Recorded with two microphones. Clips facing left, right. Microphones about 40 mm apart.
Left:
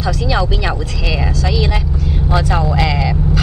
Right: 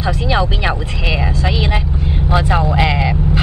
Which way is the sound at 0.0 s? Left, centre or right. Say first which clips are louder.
Right 1 dB; right.